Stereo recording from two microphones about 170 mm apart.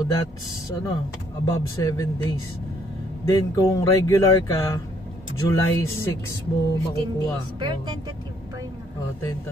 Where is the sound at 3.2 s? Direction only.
20° left (ahead or behind).